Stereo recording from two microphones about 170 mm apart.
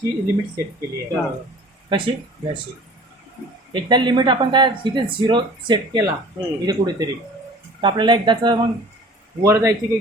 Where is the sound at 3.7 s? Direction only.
25° right (ahead or behind).